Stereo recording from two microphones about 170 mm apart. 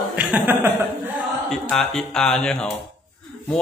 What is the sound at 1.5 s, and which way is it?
Speech, 5° left (ahead or behind).